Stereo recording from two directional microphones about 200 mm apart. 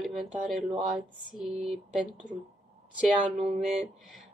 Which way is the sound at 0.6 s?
25° right (ahead or behind).